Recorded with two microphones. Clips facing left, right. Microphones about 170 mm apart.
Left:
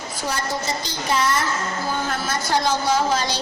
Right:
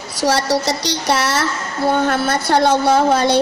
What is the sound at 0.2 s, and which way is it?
A woman's voice, 80° right.